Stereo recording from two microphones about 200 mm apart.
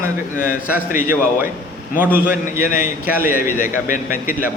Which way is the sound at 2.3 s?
40° left (ahead or behind).